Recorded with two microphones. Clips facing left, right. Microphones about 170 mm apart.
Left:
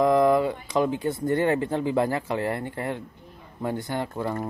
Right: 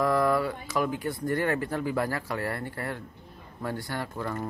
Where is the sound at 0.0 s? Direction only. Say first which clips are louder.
Left 5 dB; 20° left (ahead or behind).